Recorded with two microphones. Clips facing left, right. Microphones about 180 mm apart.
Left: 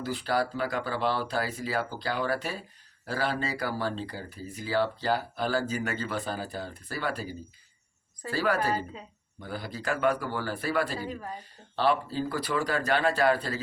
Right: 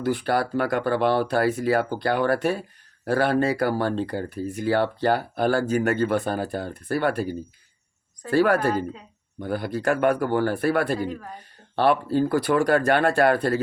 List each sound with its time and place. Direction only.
0.0 s speech: 60° right (ahead or behind)